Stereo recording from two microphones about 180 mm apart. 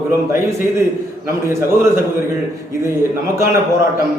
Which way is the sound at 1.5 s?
15° right (ahead or behind).